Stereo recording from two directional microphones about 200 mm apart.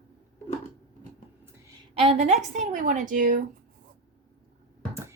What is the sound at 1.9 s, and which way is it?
A woman's voice, 30° right (ahead or behind).